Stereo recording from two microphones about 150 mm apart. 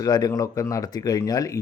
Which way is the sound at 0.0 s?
25° left (ahead or behind).